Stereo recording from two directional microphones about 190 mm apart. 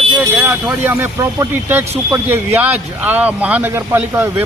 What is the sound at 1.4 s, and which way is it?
Speech, 10° right (ahead or behind).